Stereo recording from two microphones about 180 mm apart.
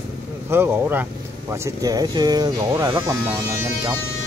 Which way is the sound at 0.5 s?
10° right (ahead or behind).